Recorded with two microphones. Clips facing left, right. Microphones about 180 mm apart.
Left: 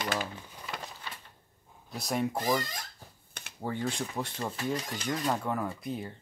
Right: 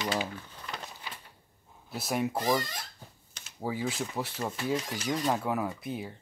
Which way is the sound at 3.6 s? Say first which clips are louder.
Right 1 dB; 5° right (ahead or behind).